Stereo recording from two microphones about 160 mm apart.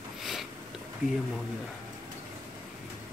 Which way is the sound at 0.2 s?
Centre (ahead or behind).